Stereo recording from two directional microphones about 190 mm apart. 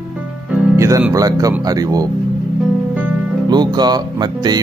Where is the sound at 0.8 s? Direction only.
15° right (ahead or behind).